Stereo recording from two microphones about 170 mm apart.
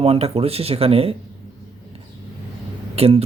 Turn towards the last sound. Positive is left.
turn(degrees=-35)  # may be behind; listen again after turning